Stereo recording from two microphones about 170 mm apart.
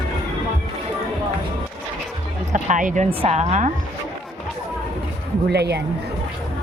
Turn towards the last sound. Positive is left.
turn(degrees=-75)  # may be behind; listen again after turning